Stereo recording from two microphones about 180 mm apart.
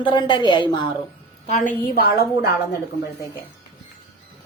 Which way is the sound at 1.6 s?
55° left (ahead or behind).